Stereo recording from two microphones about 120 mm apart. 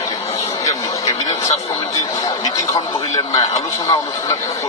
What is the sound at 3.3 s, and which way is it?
Speech, 30° left (ahead or behind).